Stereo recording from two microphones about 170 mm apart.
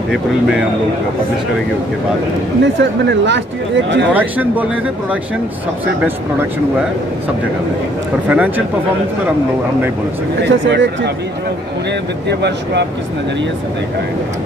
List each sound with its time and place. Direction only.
0.1 s speech: 5° right (ahead or behind)
2.6 s speech: 90° right
4.1 s speech: 10° right (ahead or behind)
8.3 s speech: 10° right (ahead or behind)
10.4 s speech: 90° right
12.3 s speech: 85° right